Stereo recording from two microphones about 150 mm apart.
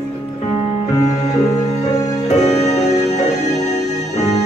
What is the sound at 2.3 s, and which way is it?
Music, 50° left (ahead or behind).